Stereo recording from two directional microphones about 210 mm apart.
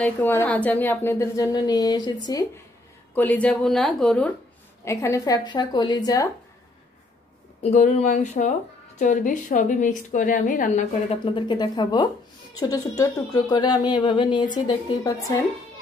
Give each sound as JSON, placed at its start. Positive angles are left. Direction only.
{"t": 0.0, "sound": "a woman's voice", "side_deg": 10}
{"t": 3.2, "sound": "a woman's voice", "side_deg": 5}
{"t": 4.8, "sound": "speech", "side_deg": 15}
{"t": 7.7, "sound": "speech", "side_deg": 35}
{"t": 11.2, "sound": "speech", "side_deg": 25}